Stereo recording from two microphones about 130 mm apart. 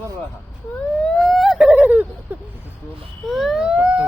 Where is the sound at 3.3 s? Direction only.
Centre (ahead or behind).